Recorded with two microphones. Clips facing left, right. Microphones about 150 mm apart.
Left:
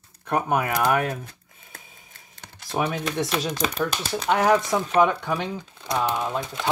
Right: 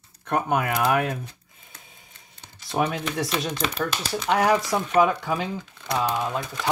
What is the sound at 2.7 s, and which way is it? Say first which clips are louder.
Speech: even; centre (ahead or behind).